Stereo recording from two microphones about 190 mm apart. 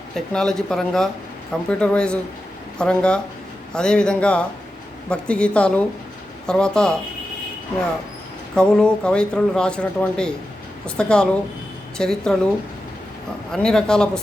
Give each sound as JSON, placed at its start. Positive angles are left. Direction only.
{"t": 0.1, "sound": "speech", "side_deg": 5}
{"t": 8.5, "sound": "speech", "side_deg": 5}
{"t": 13.5, "sound": "speech", "side_deg": 5}